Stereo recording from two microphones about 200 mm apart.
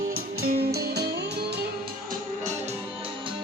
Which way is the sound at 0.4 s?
50° right (ahead or behind).